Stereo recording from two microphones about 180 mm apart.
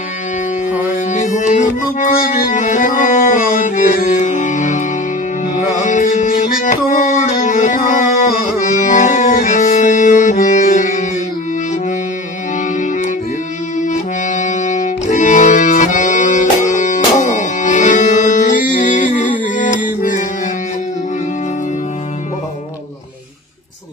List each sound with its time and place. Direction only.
1.1 s music: 45° left (ahead or behind)
13.7 s accordion: 45° left (ahead or behind)
18.8 s music: 45° left (ahead or behind)